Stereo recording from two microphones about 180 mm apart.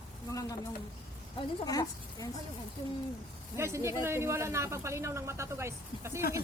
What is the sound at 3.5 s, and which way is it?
Speech, 15° right (ahead or behind).